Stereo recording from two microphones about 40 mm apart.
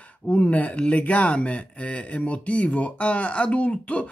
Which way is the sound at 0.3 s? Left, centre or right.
Left.